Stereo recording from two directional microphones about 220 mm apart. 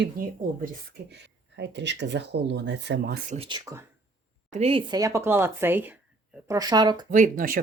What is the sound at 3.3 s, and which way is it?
Speech, 25° right (ahead or behind).